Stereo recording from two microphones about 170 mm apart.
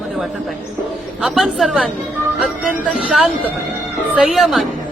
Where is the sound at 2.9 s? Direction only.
Centre (ahead or behind).